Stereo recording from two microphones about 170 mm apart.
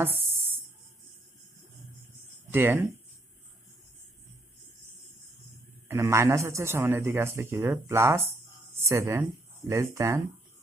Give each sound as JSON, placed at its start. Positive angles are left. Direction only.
{"t": 0.0, "sound": "a sound", "side_deg": -10}
{"t": 2.5, "sound": "a man's voice", "side_deg": -15}
{"t": 5.9, "sound": "a man's voice", "side_deg": -15}